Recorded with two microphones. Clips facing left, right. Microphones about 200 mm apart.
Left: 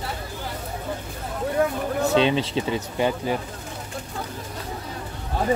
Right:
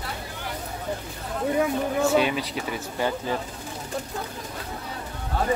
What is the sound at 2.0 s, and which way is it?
Speech, 20° left (ahead or behind).